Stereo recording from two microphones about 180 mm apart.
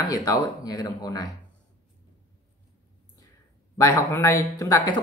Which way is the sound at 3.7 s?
15° left (ahead or behind).